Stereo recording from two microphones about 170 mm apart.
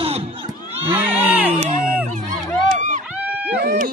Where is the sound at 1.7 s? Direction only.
50° right (ahead or behind).